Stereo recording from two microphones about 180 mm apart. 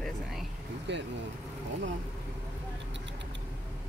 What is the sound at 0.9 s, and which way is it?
Speech, 75° right (ahead or behind).